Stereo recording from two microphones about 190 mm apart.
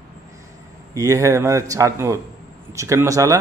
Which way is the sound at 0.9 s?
15° right (ahead or behind).